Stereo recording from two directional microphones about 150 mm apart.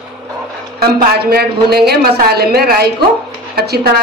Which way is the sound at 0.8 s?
90° right.